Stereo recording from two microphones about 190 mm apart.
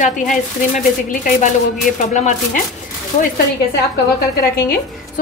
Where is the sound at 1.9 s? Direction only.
45° left (ahead or behind).